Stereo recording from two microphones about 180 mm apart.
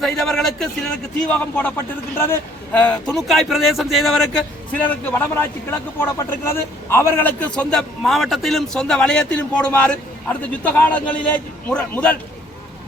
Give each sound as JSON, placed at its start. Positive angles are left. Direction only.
{"t": 0.0, "sound": "a man's voice", "side_deg": 0}